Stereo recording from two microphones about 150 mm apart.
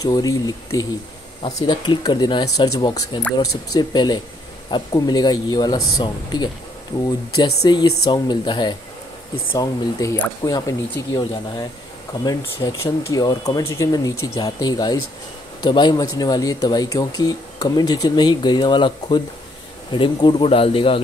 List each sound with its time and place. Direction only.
0.0 s speech: 25° left (ahead or behind)